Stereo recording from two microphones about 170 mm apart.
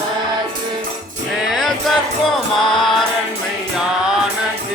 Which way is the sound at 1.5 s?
Centre (ahead or behind).